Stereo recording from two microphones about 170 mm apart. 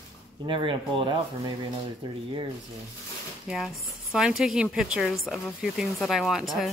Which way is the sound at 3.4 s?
5° right (ahead or behind).